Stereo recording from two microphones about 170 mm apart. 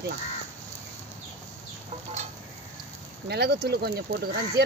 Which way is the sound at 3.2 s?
70° right (ahead or behind).